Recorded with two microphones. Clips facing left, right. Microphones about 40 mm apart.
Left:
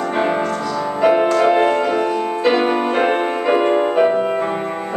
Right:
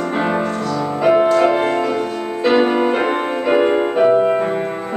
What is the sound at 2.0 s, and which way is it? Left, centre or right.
Music, left.